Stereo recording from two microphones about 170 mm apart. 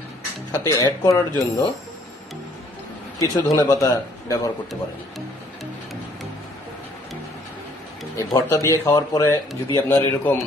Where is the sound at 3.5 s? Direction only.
20° left (ahead or behind).